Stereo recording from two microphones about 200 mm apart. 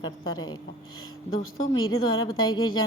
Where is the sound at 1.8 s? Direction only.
90° left.